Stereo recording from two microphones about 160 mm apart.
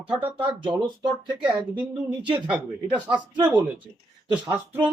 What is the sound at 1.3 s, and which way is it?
Speech, 10° right (ahead or behind).